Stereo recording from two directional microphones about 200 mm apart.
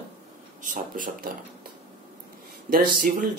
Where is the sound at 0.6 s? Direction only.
40° right (ahead or behind).